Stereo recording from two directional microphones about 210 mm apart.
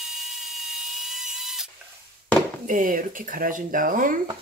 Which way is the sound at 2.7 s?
40° right (ahead or behind).